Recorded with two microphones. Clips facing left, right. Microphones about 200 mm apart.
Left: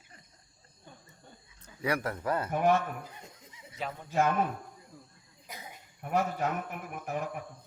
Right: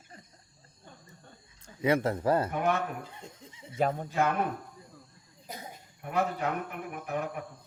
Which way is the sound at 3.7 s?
50° right (ahead or behind).